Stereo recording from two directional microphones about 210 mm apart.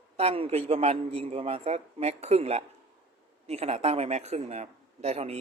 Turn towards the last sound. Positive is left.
turn(degrees=-30)  # may be behind; listen again after turning